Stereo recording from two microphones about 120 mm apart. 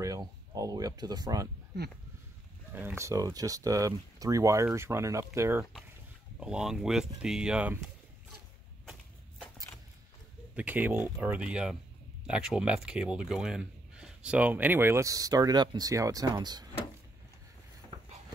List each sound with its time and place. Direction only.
0.0 s speech: 30° right (ahead or behind)
2.7 s speech: 15° right (ahead or behind)
6.4 s speech: 5° right (ahead or behind)
10.5 s speech: 15° right (ahead or behind); by 16.6 s 35° right (ahead or behind)